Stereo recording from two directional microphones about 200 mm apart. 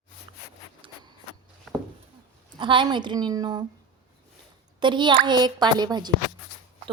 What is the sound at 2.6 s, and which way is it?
A woman's voice, 25° right (ahead or behind).